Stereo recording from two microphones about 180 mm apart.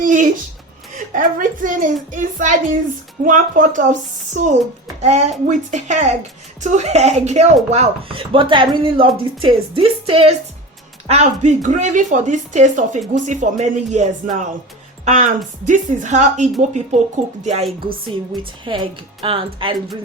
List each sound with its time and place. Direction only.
0.0 s a sound: 45° right (ahead or behind)
0.9 s a woman's voice: 45° right (ahead or behind)
18.7 s speech: 25° right (ahead or behind)